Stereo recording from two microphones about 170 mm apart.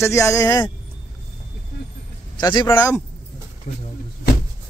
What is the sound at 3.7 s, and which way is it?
Speech, 50° left (ahead or behind).